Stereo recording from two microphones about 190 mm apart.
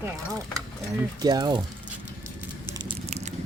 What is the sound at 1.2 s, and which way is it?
Speech, 20° right (ahead or behind).